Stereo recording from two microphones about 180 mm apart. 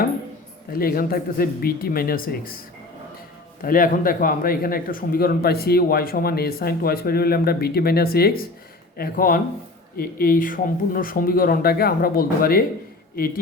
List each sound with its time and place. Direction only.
0.8 s speech: 55° left (ahead or behind)
3.6 s speech: 50° left (ahead or behind)